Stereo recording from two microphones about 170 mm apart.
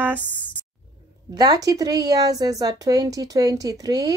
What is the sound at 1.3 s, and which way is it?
Speech, 20° right (ahead or behind).